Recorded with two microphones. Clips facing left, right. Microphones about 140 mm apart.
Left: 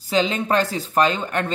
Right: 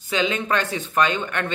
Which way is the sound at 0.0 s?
35° left (ahead or behind).